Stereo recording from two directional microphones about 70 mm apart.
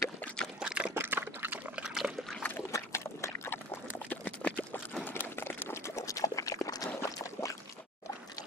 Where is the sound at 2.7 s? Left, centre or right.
Left.